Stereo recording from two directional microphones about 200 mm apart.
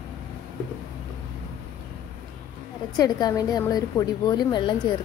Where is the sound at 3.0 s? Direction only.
20° left (ahead or behind).